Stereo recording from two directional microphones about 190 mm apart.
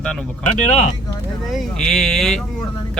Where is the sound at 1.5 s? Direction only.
Centre (ahead or behind).